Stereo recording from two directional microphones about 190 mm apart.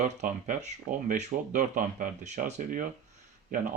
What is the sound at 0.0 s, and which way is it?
Speech, 40° right (ahead or behind).